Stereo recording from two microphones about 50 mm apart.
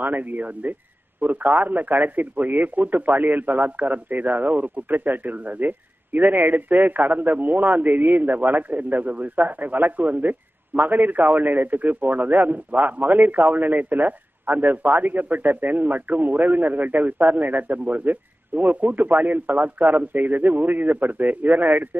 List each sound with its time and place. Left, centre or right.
0.0 s a man's voice: right